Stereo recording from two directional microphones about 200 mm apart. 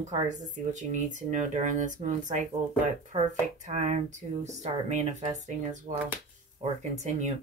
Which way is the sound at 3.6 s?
35° right (ahead or behind).